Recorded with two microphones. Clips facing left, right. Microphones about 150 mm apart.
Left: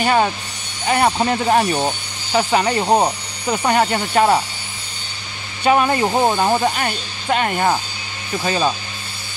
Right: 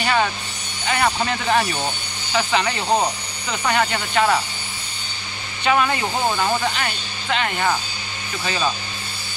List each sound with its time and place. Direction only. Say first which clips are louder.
0.0 s speech: left 4 dB; 35° left (ahead or behind)
2.8 s speech: left 4 dB; 20° left (ahead or behind)
3.4 s speech: left 4 dB; 40° left (ahead or behind)
5.6 s speech: left 4 dB; 40° left (ahead or behind)
6.7 s speech: left 4 dB; 45° left (ahead or behind)